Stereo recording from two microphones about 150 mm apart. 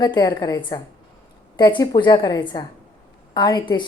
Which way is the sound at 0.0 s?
25° left (ahead or behind).